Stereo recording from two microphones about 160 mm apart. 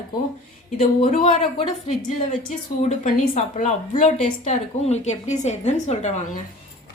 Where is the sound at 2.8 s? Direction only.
50° left (ahead or behind).